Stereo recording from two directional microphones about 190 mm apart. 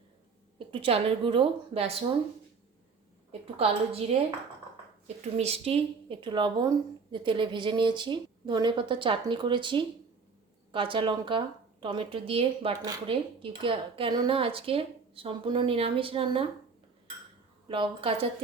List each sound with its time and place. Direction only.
0.7 s speech: 30° right (ahead or behind)
3.4 s a woman's voice: 30° right (ahead or behind)
5.0 s speech: 35° right (ahead or behind)
17.7 s speech: 30° right (ahead or behind)